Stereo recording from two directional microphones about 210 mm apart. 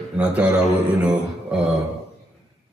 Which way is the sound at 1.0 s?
5° right (ahead or behind).